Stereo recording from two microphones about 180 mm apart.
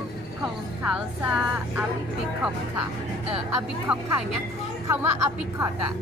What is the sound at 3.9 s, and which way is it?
Speech, 5° right (ahead or behind).